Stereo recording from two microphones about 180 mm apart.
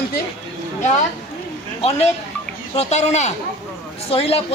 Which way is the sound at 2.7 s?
40° left (ahead or behind).